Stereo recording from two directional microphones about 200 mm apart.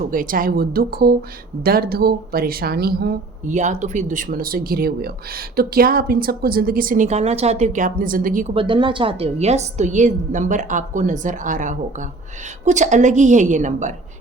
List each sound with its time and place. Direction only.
0.0 s speech: 45° right (ahead or behind)
3.5 s speech: 35° right (ahead or behind)
8.5 s a woman's voice: 25° right (ahead or behind)